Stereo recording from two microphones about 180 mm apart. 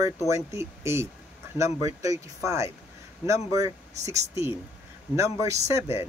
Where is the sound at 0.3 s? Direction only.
15° right (ahead or behind).